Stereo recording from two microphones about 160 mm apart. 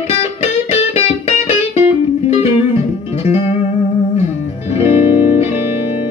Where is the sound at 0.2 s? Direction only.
40° left (ahead or behind).